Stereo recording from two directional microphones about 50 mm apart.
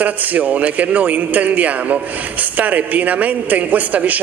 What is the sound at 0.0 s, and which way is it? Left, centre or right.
A man's voice, right.